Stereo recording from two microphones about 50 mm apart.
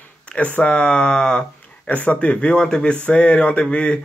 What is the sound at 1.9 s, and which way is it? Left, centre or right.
Speech, left.